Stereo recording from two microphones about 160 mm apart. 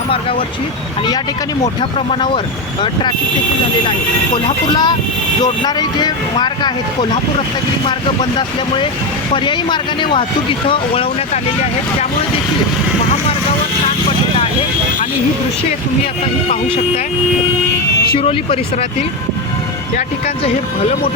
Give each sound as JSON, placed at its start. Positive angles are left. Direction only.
{"t": 0.1, "sound": "speech", "side_deg": 35}
{"t": 1.8, "sound": "speech", "side_deg": 30}
{"t": 4.7, "sound": "speech", "side_deg": 25}
{"t": 18.2, "sound": "speech", "side_deg": 35}
{"t": 20.0, "sound": "speech", "side_deg": 45}